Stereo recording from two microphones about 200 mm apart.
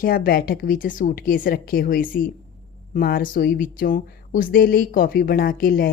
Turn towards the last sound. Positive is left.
turn(degrees=50)  # may be behind; listen again after turning